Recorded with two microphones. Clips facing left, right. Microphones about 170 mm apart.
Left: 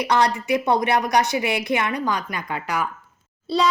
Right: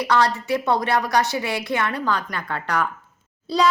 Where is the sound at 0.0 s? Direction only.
20° left (ahead or behind).